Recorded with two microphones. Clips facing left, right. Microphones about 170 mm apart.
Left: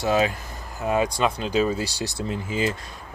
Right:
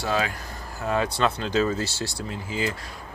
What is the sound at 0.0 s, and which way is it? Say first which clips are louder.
Speech: left 4 dB; 20° left (ahead or behind).